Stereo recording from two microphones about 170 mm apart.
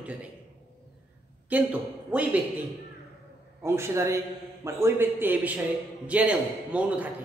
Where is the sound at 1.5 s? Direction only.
10° right (ahead or behind).